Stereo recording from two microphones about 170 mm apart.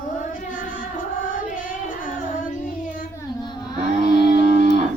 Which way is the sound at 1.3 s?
55° left (ahead or behind).